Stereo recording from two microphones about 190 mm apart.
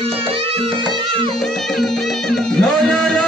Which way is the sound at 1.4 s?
Centre (ahead or behind).